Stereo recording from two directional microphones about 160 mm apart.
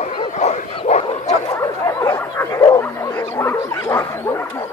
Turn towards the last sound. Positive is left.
turn(degrees=15)  # may be behind; listen again after turning